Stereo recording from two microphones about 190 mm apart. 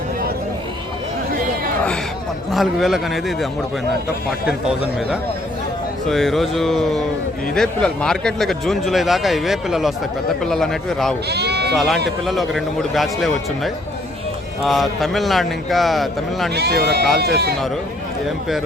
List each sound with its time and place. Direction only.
2.5 s a man's voice: centre (ahead or behind)
6.1 s a man's voice: centre (ahead or behind)
11.3 s speech: 60° right (ahead or behind)
11.7 s a man's voice: centre (ahead or behind)
14.6 s a man's voice: centre (ahead or behind)
16.6 s speech: 60° right (ahead or behind)